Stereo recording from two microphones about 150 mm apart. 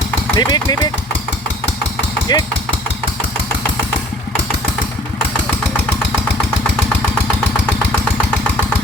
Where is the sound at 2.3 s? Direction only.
25° left (ahead or behind).